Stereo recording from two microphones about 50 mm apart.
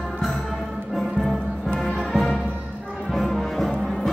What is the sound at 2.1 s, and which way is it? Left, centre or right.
Music, centre.